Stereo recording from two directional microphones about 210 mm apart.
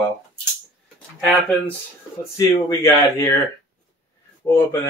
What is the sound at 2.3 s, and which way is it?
Speech, 15° left (ahead or behind).